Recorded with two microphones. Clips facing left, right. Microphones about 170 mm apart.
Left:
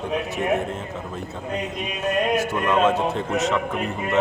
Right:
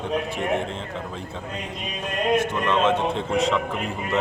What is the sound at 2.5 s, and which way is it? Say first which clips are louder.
Speech: left 2 dB; 10° left (ahead or behind).